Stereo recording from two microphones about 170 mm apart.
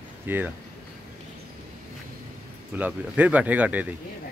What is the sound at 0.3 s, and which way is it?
Speech, 10° right (ahead or behind).